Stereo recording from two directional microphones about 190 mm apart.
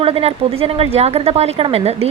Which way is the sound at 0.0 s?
30° right (ahead or behind).